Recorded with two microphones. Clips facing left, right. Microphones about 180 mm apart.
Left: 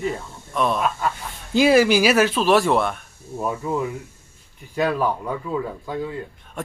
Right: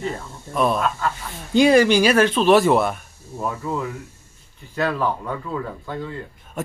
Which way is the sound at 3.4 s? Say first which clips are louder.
Left 2 dB; 15° left (ahead or behind).